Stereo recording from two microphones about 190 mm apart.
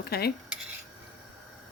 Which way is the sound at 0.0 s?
55° left (ahead or behind).